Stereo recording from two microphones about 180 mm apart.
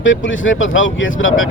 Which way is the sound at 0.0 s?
90° left.